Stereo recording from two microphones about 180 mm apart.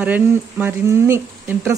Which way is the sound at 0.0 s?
10° right (ahead or behind).